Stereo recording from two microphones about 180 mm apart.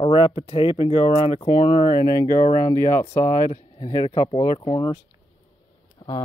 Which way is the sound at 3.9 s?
30° left (ahead or behind).